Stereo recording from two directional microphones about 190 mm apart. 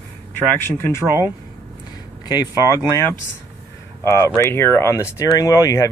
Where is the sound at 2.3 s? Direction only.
20° left (ahead or behind).